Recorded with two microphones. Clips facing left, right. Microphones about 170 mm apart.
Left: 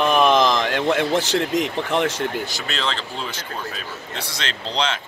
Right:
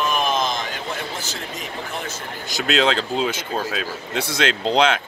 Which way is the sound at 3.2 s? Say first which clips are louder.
Right 6 dB; 90° right.